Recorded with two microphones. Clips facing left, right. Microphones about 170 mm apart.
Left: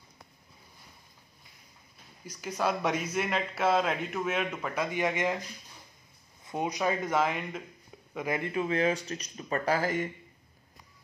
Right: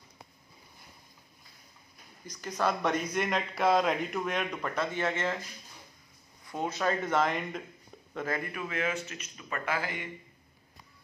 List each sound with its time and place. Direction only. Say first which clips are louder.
2.2 s speech: even; 10° left (ahead or behind)
6.4 s speech: left 1 dB; 15° left (ahead or behind)
8.4 s speech: left 6 dB; 25° left (ahead or behind)